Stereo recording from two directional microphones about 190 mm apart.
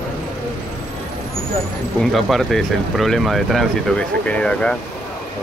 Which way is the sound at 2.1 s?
Centre (ahead or behind).